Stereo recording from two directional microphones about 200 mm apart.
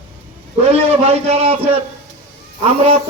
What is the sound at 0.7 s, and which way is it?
A man's voice, 30° right (ahead or behind).